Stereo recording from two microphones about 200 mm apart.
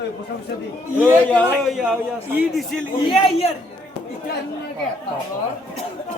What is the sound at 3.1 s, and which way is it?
Speech, 30° left (ahead or behind).